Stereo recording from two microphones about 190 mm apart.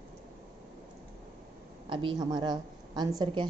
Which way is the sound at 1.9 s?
25° right (ahead or behind).